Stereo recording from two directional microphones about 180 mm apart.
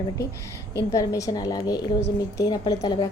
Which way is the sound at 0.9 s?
20° left (ahead or behind).